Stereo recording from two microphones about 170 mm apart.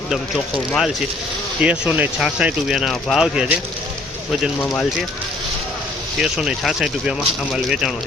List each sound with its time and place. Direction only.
0.1 s speech: centre (ahead or behind)
6.1 s speech: 5° right (ahead or behind)